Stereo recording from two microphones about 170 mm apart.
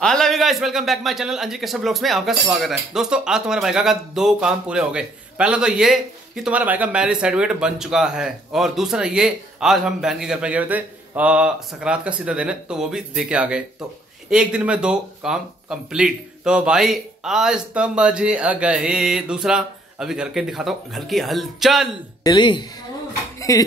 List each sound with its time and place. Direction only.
0.0 s speech: centre (ahead or behind)
22.2 s a woman's voice: 25° left (ahead or behind)